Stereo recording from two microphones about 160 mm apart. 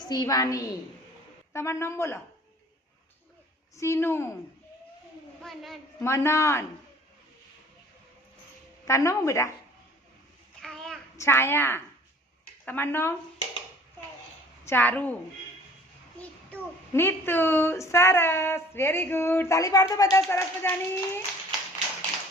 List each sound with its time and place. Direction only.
0.0 s a woman's voice: 25° left (ahead or behind)
3.8 s a child's voice: 15° left (ahead or behind)
5.4 s a woman's voice: centre (ahead or behind)
6.0 s a child's voice: 15° left (ahead or behind)
8.9 s a woman's voice: 20° left (ahead or behind)
10.6 s child singing: centre (ahead or behind)
11.2 s a child's voice: 15° left (ahead or behind)
14.6 s a woman's voice: 15° left (ahead or behind)
16.1 s a child's voice: 10° left (ahead or behind)